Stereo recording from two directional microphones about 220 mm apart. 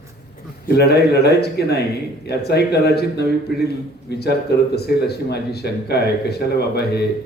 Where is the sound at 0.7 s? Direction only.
45° left (ahead or behind).